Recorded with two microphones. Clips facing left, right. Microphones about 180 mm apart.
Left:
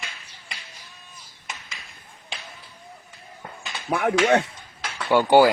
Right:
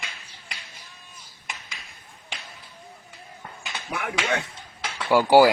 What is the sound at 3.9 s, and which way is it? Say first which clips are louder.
Speech: left 8 dB; 55° left (ahead or behind).